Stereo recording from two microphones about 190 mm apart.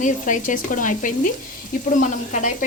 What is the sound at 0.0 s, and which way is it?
Speech, 45° left (ahead or behind).